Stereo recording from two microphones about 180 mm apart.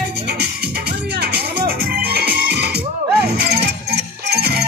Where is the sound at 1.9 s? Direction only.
55° right (ahead or behind).